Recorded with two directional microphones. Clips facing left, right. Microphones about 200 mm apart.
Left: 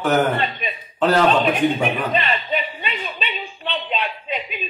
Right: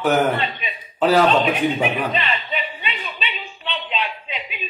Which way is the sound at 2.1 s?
40° left (ahead or behind).